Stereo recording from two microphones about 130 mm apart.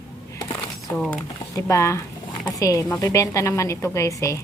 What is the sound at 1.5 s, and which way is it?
Speech, 20° left (ahead or behind).